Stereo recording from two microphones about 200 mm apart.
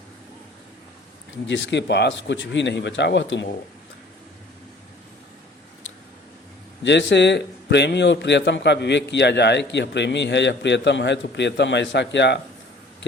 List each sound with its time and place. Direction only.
1.3 s a man's voice: 65° left (ahead or behind)
6.8 s a man's voice: 60° left (ahead or behind)